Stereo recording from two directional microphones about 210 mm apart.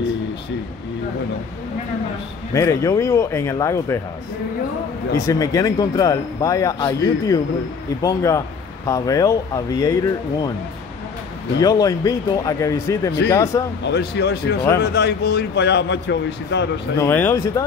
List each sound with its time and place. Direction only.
2.5 s speech: 15° left (ahead or behind)
5.1 s speech: 15° left (ahead or behind)
11.6 s speech: 15° left (ahead or behind)
13.8 s a man's voice: 55° left (ahead or behind)
17.0 s speech: 10° left (ahead or behind)